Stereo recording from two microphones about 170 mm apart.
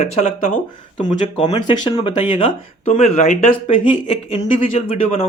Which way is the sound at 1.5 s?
25° left (ahead or behind).